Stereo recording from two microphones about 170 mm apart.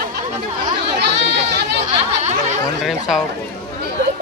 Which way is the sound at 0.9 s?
75° right (ahead or behind).